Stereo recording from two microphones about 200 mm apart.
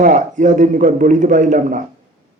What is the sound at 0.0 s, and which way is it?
Speech, 40° right (ahead or behind).